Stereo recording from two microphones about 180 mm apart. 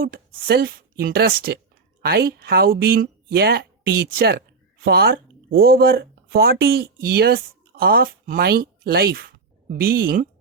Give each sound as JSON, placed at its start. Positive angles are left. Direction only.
{"t": 0.0, "sound": "speech", "side_deg": -60}